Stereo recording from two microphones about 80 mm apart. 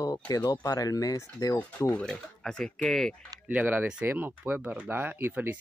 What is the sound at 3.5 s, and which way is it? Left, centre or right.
Speech, right.